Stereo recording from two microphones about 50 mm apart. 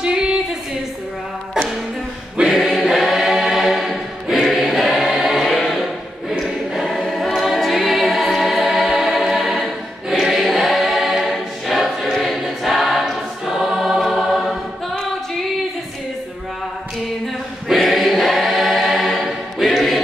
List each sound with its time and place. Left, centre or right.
0.0 s a sound: centre
2.4 s choir: centre
17.7 s choir: centre